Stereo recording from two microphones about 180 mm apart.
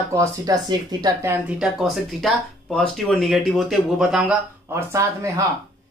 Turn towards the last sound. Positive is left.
turn(degrees=-15)  # may be behind; listen again after turning